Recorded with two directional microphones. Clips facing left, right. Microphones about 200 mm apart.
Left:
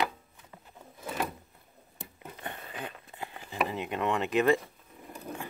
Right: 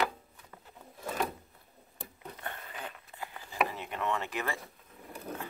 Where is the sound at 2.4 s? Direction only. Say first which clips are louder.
Left 3 dB; 15° left (ahead or behind).